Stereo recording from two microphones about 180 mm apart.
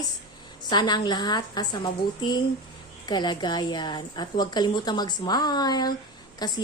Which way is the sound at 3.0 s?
25° left (ahead or behind).